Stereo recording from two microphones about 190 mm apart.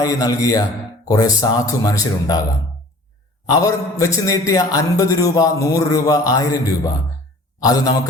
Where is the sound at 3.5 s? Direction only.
15° left (ahead or behind).